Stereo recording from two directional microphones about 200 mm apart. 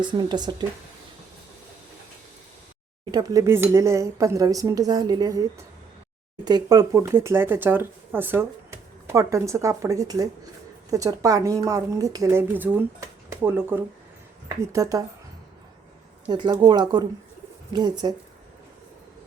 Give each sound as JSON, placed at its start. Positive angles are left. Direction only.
{"t": 0.0, "sound": "speech", "side_deg": -20}
{"t": 3.1, "sound": "speech", "side_deg": -20}
{"t": 6.4, "sound": "speech", "side_deg": -20}
{"t": 16.3, "sound": "speech", "side_deg": -20}